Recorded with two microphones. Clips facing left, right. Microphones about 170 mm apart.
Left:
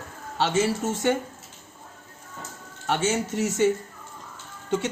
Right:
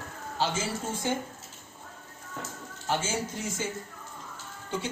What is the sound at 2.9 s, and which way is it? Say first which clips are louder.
Speech: left 6 dB; 75° left (ahead or behind).